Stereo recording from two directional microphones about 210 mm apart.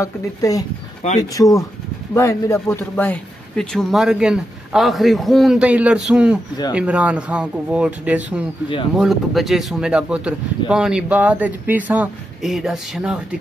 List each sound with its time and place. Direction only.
0.0 s speech: 15° left (ahead or behind); by 13.2 s centre (ahead or behind)